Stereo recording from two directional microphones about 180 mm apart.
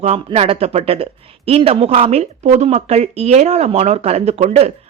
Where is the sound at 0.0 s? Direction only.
35° right (ahead or behind).